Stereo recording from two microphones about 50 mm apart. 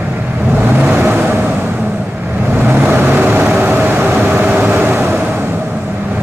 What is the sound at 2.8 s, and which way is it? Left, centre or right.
Vehicle, right.